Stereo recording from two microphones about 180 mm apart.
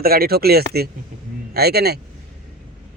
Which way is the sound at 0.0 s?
55° right (ahead or behind).